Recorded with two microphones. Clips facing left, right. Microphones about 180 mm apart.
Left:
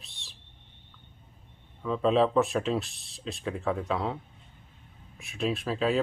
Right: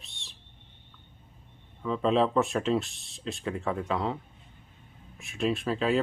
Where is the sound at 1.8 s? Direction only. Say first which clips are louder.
Left 1 dB; centre (ahead or behind).